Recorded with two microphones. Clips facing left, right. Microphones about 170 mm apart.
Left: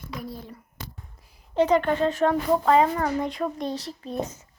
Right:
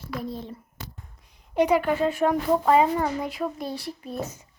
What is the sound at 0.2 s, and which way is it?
Speech, 25° right (ahead or behind).